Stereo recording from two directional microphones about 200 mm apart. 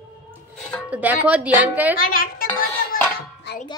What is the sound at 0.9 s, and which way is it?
A woman's voice, 5° right (ahead or behind).